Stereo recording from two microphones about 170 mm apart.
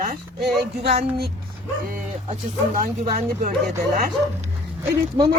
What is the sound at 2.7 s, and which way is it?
Speech, 60° right (ahead or behind).